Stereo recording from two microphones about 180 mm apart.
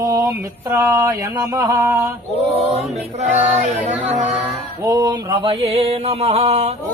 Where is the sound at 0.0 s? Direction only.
15° right (ahead or behind).